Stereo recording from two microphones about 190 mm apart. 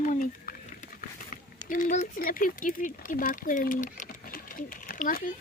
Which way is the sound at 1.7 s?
40° left (ahead or behind).